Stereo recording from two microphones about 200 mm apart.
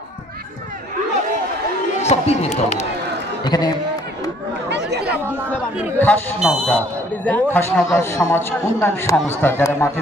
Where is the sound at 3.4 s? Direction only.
20° left (ahead or behind).